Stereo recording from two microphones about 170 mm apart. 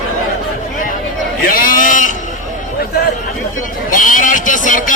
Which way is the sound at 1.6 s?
50° left (ahead or behind).